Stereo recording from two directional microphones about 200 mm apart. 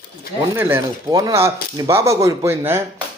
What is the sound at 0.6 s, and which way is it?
A man's voice, 10° right (ahead or behind).